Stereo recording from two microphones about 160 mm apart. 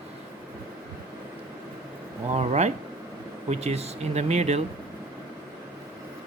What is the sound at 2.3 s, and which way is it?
Speech, 40° right (ahead or behind).